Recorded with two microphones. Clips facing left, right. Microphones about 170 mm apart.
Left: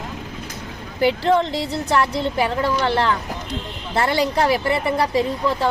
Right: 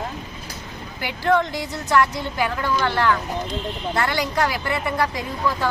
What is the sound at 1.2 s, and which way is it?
Speech, 25° left (ahead or behind).